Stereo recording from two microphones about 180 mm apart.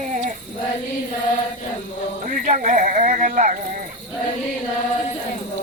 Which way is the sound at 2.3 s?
45° right (ahead or behind).